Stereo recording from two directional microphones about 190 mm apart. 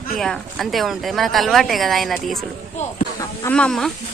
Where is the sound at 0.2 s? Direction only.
Centre (ahead or behind).